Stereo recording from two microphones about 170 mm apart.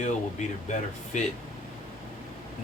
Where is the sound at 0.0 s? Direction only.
45° left (ahead or behind).